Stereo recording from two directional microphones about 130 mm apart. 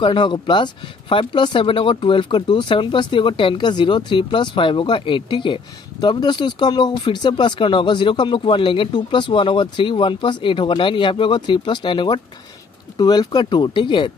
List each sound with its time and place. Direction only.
0.0 s speech: 35° left (ahead or behind)